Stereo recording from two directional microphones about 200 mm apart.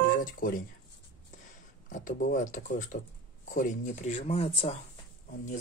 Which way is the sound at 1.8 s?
40° left (ahead or behind).